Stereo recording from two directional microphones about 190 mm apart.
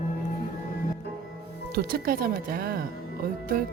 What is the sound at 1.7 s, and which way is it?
Speech, 50° right (ahead or behind).